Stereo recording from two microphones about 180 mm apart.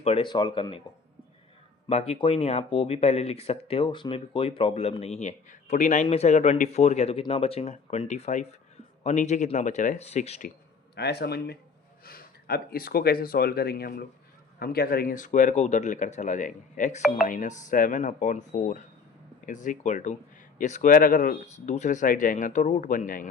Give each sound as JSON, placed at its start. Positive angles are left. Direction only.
{"t": 0.0, "sound": "speech", "side_deg": 30}
{"t": 1.9, "sound": "speech", "side_deg": 35}
{"t": 10.9, "sound": "speech", "side_deg": 65}